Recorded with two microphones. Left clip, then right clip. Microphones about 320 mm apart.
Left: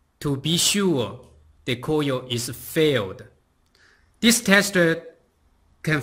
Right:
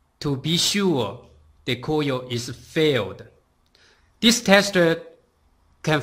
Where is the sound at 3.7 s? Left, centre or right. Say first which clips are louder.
Right 2 dB; centre.